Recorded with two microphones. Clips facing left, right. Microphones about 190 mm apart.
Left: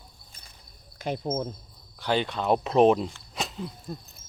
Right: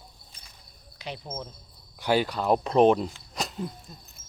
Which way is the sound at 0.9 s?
50° left (ahead or behind).